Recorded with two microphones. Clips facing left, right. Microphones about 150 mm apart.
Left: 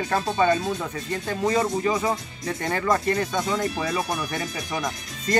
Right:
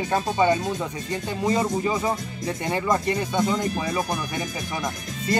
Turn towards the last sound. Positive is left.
turn(degrees=-10)  # may be behind; listen again after turning